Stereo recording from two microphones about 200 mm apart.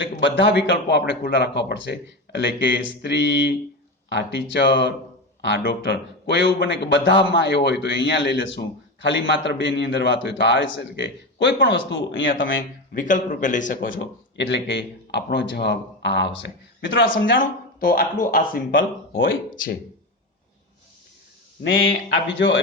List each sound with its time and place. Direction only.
0.2 s speech: 60° left (ahead or behind)
12.9 s a man's voice: 40° left (ahead or behind)
14.0 s speech: 60° left (ahead or behind)
17.7 s speech: 45° left (ahead or behind)
18.7 s speech: 70° left (ahead or behind)
21.6 s speech: 65° left (ahead or behind)